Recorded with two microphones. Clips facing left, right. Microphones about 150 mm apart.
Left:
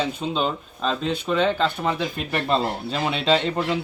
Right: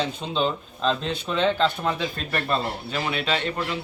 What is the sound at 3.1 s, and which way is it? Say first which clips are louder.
Speech: left 7 dB; 30° left (ahead or behind).